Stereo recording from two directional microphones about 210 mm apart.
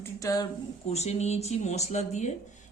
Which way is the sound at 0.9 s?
30° left (ahead or behind).